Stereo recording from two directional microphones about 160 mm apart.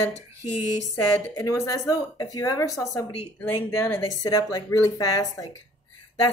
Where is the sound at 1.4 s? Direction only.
20° left (ahead or behind).